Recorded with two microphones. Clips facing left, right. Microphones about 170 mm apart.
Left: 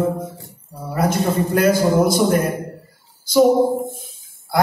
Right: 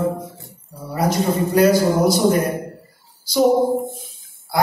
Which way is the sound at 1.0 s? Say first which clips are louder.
Even; 50° left (ahead or behind).